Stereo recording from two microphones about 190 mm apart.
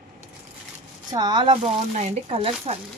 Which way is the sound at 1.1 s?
20° right (ahead or behind).